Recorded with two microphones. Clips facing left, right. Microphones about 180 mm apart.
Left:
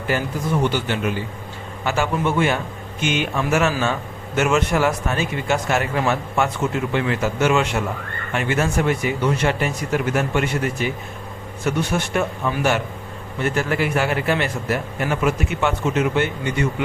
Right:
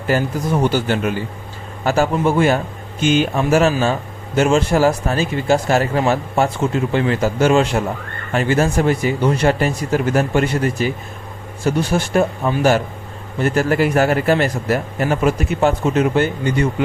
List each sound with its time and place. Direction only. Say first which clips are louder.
0.1 s speech: right 4 dB; 40° right (ahead or behind)